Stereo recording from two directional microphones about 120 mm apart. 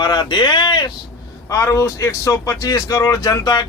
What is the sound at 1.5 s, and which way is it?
Speech, 25° left (ahead or behind).